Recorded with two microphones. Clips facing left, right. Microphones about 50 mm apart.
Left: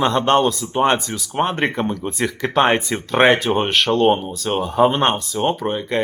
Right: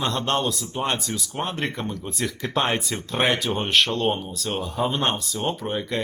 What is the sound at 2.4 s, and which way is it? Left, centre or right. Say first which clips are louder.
Speech: left 8 dB; left.